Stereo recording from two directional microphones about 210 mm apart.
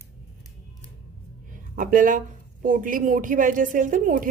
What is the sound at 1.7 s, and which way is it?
A woman's voice, 40° right (ahead or behind).